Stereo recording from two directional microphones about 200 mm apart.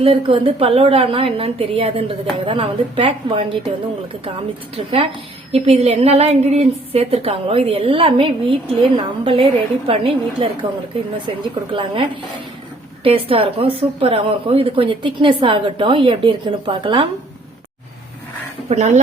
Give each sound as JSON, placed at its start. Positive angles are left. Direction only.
{"t": 0.0, "sound": "a woman's voice", "side_deg": -25}
{"t": 4.8, "sound": "a woman's voice", "side_deg": -30}
{"t": 11.7, "sound": "a woman's voice", "side_deg": -25}
{"t": 18.7, "sound": "speech", "side_deg": -35}